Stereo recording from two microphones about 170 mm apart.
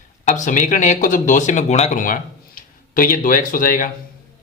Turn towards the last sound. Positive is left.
turn(degrees=55)  # may be behind; listen again after turning